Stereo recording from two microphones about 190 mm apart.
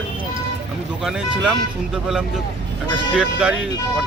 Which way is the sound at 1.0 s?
5° right (ahead or behind).